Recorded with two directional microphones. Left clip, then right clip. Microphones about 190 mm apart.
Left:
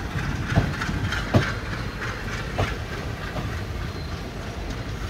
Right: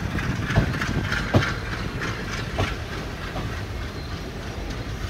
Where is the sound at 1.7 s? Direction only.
55° right (ahead or behind).